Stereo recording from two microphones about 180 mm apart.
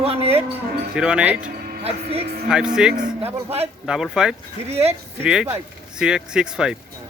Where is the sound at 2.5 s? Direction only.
5° right (ahead or behind).